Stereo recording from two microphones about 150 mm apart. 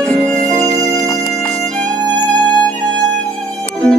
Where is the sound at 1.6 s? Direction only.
55° right (ahead or behind).